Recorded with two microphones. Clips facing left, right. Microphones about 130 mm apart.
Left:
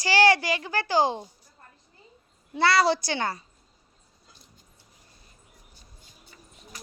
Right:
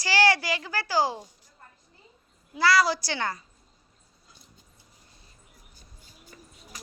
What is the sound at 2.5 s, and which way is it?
Speech, 25° left (ahead or behind).